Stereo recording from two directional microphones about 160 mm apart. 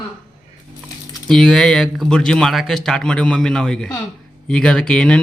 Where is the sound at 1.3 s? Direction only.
Centre (ahead or behind).